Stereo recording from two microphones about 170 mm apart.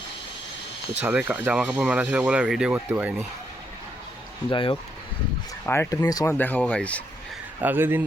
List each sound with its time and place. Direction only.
1.0 s speech: 10° right (ahead or behind)
4.4 s speech: 30° left (ahead or behind)
5.6 s speech: 15° left (ahead or behind)
6.3 s speech: 10° left (ahead or behind)
7.6 s speech: 10° right (ahead or behind)